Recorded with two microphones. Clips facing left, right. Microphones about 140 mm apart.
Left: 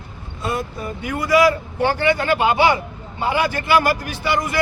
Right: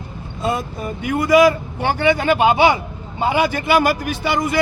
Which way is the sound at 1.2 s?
20° right (ahead or behind).